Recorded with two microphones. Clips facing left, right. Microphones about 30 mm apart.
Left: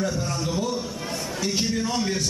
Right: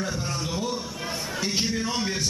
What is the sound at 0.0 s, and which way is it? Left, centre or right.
A man's voice, centre.